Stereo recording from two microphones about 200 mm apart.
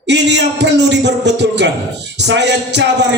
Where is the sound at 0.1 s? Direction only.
60° right (ahead or behind).